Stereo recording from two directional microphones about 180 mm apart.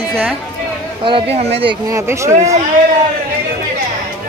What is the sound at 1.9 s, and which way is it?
Speech, 15° right (ahead or behind).